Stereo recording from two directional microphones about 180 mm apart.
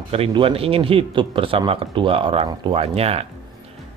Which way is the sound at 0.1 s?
30° right (ahead or behind).